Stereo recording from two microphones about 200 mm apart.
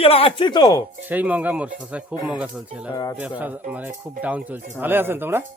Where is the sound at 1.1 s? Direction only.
10° right (ahead or behind).